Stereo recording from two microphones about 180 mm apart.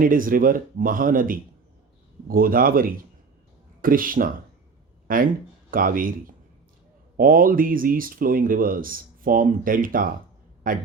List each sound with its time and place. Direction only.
0.0 s speech: 50° right (ahead or behind)
7.2 s speech: 50° right (ahead or behind)